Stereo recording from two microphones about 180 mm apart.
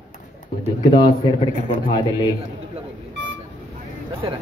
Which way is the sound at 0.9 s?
25° left (ahead or behind).